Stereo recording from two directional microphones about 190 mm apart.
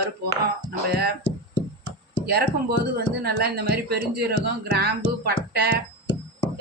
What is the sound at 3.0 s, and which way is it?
Speech, 55° right (ahead or behind).